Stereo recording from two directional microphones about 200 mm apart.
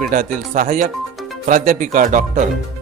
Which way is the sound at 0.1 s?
40° right (ahead or behind).